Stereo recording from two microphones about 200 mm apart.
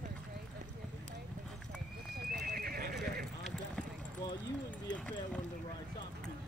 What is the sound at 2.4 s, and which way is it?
Neigh, 45° right (ahead or behind).